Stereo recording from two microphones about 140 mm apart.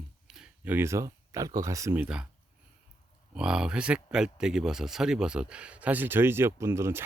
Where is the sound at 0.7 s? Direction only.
20° right (ahead or behind).